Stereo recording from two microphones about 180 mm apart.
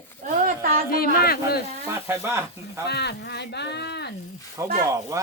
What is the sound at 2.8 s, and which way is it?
Speech, 65° left (ahead or behind).